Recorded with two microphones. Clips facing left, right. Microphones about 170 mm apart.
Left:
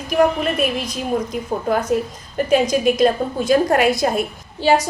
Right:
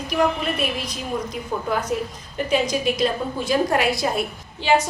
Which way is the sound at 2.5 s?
50° left (ahead or behind).